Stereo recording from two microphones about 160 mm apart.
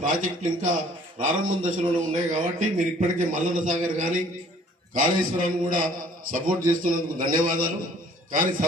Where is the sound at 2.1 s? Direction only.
50° right (ahead or behind).